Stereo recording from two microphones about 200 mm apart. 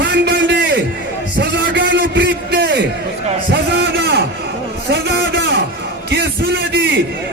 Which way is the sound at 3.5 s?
55° right (ahead or behind).